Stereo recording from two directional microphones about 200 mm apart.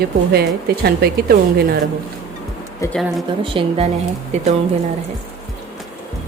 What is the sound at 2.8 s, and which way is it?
Speech, 15° left (ahead or behind).